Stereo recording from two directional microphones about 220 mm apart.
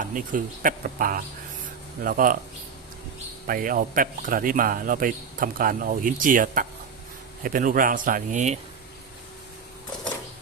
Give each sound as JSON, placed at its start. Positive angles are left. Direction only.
{"t": 0.0, "sound": "a man's voice", "side_deg": -35}
{"t": 3.4, "sound": "a man's voice", "side_deg": -40}